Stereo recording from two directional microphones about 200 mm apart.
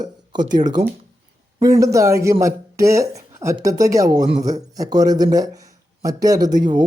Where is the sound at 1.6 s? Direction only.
15° right (ahead or behind).